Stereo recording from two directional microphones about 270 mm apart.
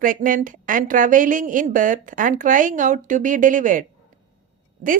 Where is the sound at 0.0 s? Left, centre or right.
Right.